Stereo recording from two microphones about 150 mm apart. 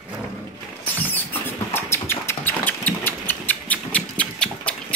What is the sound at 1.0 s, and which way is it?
Rodents, 10° left (ahead or behind).